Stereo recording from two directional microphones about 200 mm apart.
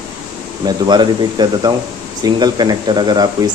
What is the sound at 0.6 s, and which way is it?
Speech, 20° right (ahead or behind).